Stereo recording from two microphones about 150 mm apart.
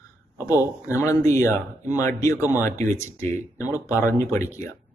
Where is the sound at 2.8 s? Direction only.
15° left (ahead or behind).